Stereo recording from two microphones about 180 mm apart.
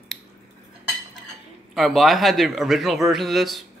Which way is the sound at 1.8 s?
Centre (ahead or behind).